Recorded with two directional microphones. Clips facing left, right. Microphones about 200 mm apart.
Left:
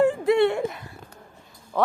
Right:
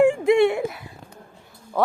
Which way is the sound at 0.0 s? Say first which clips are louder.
Right 3 dB; 15° right (ahead or behind).